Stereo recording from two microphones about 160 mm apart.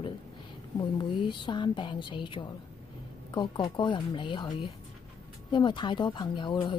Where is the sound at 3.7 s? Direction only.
30° left (ahead or behind).